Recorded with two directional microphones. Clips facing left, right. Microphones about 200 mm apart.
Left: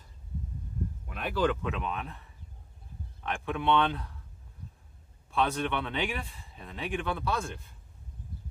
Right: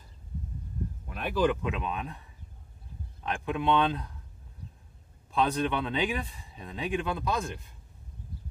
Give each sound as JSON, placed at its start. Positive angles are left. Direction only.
{"t": 1.3, "sound": "speech", "side_deg": -15}
{"t": 3.3, "sound": "speech", "side_deg": -15}
{"t": 5.3, "sound": "speech", "side_deg": -15}